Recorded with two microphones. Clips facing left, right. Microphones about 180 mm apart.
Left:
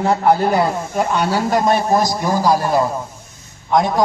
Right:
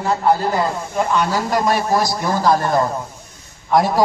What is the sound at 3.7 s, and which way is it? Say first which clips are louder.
Speech: even; 5° right (ahead or behind).